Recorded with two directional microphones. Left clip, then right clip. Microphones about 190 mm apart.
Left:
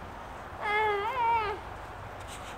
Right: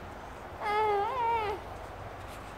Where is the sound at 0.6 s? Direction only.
5° left (ahead or behind).